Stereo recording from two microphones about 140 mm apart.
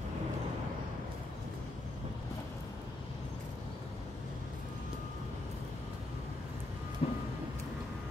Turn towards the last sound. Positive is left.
turn(degrees=50)  # may be behind; listen again after turning